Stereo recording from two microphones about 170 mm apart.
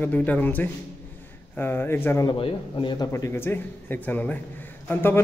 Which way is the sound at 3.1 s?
15° left (ahead or behind).